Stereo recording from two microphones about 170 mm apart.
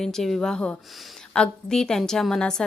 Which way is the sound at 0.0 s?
Centre (ahead or behind).